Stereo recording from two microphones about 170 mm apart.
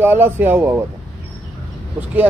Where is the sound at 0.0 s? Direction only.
10° right (ahead or behind).